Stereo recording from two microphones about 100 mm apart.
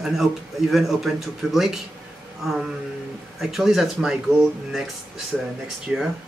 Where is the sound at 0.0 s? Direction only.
Centre (ahead or behind).